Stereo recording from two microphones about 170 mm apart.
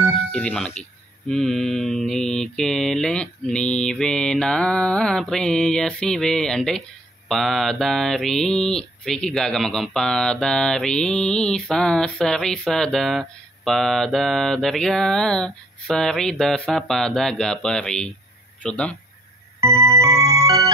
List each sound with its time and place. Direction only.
0.3 s speech: 5° left (ahead or behind)
1.3 s mantra: centre (ahead or behind)
18.6 s speech: 5° left (ahead or behind)
19.6 s music: 15° right (ahead or behind)